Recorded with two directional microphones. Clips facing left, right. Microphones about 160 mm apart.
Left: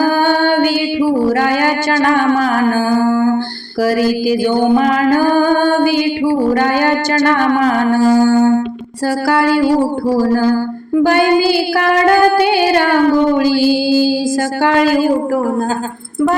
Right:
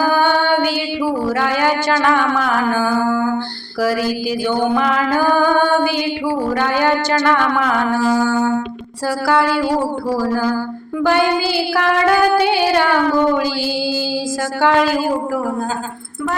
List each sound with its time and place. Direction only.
0.0 s music: 45° left (ahead or behind)
4.5 s mantra: 15° left (ahead or behind)
4.8 s music: 45° left (ahead or behind)
11.0 s music: 45° left (ahead or behind)
13.6 s mantra: 15° left (ahead or behind)